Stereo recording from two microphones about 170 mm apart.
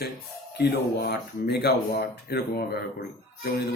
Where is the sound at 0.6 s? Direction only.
70° left (ahead or behind).